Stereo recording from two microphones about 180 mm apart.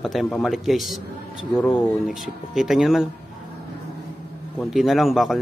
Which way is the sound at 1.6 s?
10° left (ahead or behind).